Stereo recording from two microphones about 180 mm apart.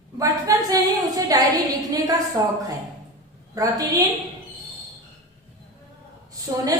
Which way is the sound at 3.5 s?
20° right (ahead or behind).